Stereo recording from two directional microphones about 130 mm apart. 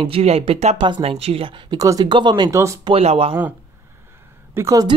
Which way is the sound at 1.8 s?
25° right (ahead or behind).